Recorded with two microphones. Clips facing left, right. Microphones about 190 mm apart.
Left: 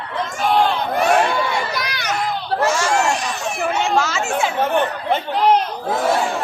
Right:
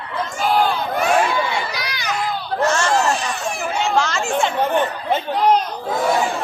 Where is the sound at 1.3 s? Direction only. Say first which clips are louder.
Left 1 dB; 55° left (ahead or behind).